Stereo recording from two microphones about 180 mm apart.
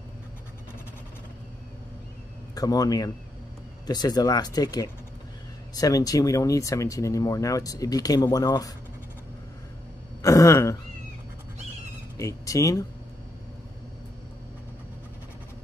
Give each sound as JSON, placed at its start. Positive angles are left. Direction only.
{"t": 2.5, "sound": "speech", "side_deg": 20}
{"t": 10.2, "sound": "speech", "side_deg": 15}
{"t": 12.2, "sound": "speech", "side_deg": 15}